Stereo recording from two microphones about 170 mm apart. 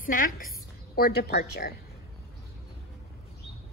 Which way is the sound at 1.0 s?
65° left (ahead or behind).